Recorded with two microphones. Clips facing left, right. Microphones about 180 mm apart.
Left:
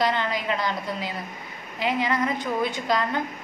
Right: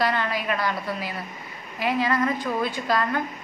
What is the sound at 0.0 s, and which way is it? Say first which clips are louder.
A woman's voice: even; 20° left (ahead or behind).